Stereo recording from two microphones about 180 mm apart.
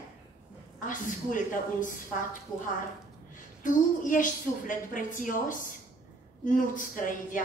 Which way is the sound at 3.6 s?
45° left (ahead or behind).